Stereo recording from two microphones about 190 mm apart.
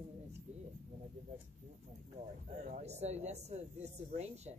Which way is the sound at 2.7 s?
35° right (ahead or behind).